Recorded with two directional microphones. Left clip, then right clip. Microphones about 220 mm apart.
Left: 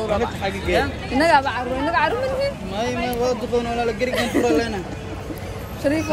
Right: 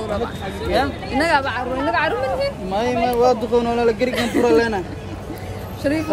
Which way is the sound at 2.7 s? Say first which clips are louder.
Right 5 dB; 30° right (ahead or behind).